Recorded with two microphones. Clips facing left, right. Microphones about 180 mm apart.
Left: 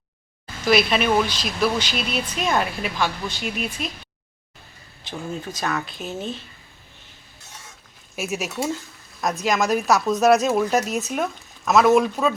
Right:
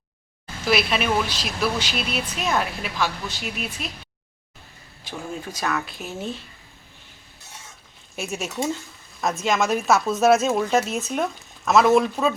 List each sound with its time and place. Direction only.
0.6 s speech: 5° right (ahead or behind)
5.5 s speech: 5° right (ahead or behind)
8.1 s speech: centre (ahead or behind)